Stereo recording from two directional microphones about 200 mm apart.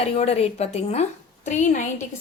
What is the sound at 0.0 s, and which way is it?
A woman's voice, 30° left (ahead or behind).